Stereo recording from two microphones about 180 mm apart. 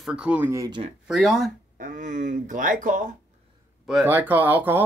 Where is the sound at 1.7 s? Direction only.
45° right (ahead or behind).